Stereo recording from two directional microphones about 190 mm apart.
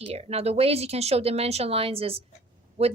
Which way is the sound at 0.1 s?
35° right (ahead or behind).